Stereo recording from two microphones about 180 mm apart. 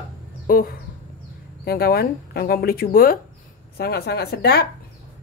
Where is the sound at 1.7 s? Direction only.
55° left (ahead or behind).